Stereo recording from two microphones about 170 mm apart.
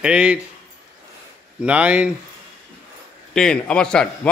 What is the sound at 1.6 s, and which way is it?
Speech, 5° right (ahead or behind).